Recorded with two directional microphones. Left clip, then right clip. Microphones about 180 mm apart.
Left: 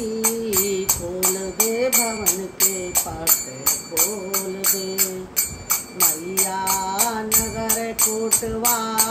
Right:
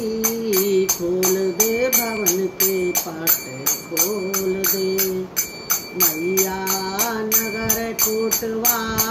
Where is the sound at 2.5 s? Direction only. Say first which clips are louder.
Right 3 dB; 20° left (ahead or behind).